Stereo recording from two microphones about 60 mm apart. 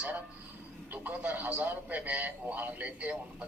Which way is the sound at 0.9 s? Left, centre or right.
Right.